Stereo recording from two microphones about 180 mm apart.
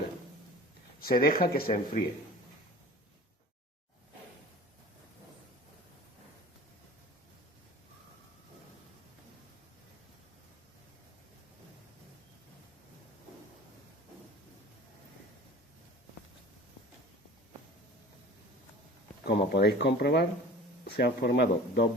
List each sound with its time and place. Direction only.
0.9 s speech: 55° left (ahead or behind)
19.2 s a sound: 65° left (ahead or behind)
20.9 s speech: 65° left (ahead or behind)